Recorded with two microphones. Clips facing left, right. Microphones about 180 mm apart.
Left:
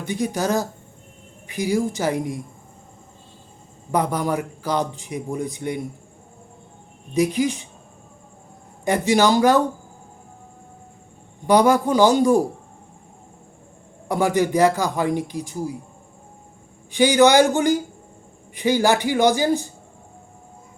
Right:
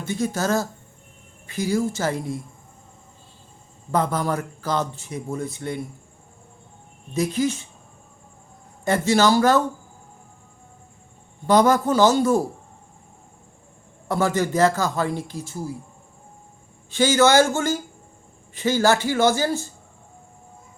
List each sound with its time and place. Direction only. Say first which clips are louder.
0.0 s speech: left 1 dB; 15° left (ahead or behind)
3.9 s speech: left 1 dB; 15° left (ahead or behind)
7.1 s speech: left 3 dB; 15° left (ahead or behind)
8.8 s speech: left 1 dB; 15° left (ahead or behind)
11.4 s speech: left 1 dB; 10° left (ahead or behind)
14.1 s speech: left 2 dB; 15° left (ahead or behind)
16.9 s speech: left 2 dB; 15° left (ahead or behind)